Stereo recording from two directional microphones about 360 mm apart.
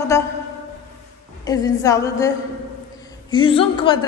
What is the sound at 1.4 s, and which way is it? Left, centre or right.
A woman's voice, centre.